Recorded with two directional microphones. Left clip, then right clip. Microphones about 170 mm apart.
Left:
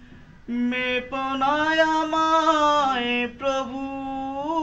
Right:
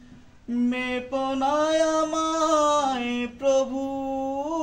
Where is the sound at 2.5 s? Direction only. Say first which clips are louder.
Left 2 dB; 45° right (ahead or behind).